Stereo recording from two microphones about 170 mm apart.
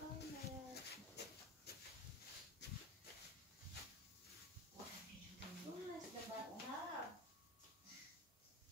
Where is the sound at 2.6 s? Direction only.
80° left.